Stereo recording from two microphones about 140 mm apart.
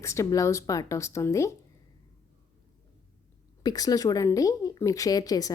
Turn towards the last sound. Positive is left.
turn(degrees=25)  # may be behind; listen again after turning